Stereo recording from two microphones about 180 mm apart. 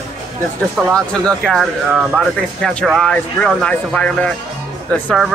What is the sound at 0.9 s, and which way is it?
Speech, 5° left (ahead or behind).